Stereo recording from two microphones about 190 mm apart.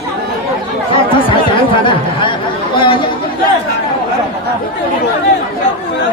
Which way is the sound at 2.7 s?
25° left (ahead or behind).